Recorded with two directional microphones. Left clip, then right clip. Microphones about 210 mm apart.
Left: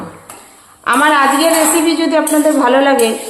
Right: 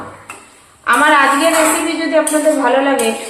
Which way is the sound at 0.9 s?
50° left (ahead or behind).